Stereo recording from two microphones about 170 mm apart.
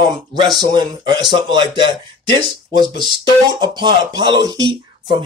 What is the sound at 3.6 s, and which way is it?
Speech, 25° right (ahead or behind).